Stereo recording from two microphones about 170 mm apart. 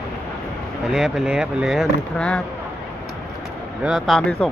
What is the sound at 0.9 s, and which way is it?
Speech, centre (ahead or behind).